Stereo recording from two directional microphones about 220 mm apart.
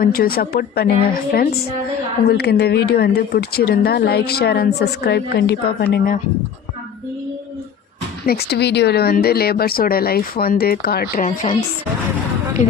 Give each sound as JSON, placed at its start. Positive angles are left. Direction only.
{"t": 0.0, "sound": "speech", "side_deg": 40}
{"t": 8.3, "sound": "speech", "side_deg": 45}